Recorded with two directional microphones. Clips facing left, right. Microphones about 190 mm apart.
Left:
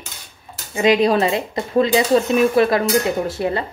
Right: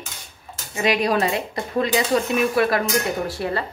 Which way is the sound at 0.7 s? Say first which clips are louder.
Left 5 dB; 25° left (ahead or behind).